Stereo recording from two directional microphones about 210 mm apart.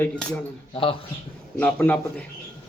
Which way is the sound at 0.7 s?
25° left (ahead or behind).